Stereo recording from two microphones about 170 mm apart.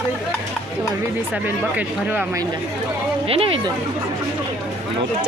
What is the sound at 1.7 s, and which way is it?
Speech, 10° right (ahead or behind).